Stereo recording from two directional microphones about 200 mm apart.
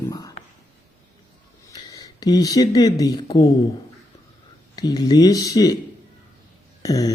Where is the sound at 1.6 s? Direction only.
15° left (ahead or behind).